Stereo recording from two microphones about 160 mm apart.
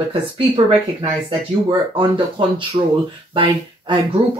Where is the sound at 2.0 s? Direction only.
30° right (ahead or behind).